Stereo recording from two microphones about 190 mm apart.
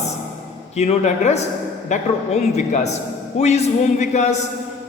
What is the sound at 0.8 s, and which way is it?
A man's voice, 35° left (ahead or behind).